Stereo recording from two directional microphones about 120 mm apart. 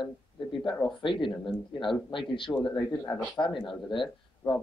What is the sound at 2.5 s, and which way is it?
Speech, 5° left (ahead or behind).